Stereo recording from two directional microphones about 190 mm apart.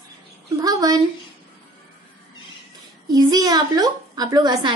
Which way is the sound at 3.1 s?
20° right (ahead or behind).